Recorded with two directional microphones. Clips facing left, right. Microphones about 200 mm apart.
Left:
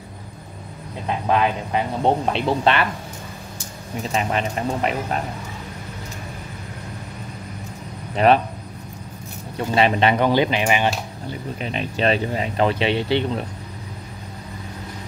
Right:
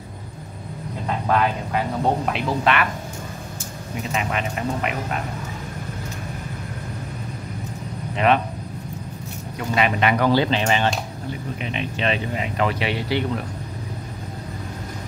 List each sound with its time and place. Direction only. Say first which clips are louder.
1.0 s speech: left 1 dB; 20° left (ahead or behind)
4.1 s speech: left 3 dB; 35° left (ahead or behind)
8.2 s speech: left 3 dB; 35° left (ahead or behind)
9.6 s speech: left 3 dB; 30° left (ahead or behind); by 10.9 s 15° left (ahead or behind)
11.6 s speech: left 4 dB; 40° left (ahead or behind)